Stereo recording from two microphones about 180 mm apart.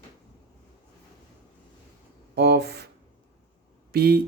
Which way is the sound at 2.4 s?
65° right (ahead or behind).